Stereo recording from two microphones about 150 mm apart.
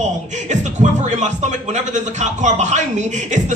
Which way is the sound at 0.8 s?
50° right (ahead or behind).